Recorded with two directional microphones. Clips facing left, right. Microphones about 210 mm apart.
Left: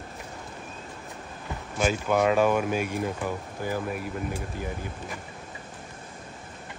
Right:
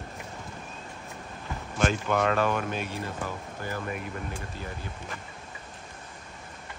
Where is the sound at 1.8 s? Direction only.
5° left (ahead or behind).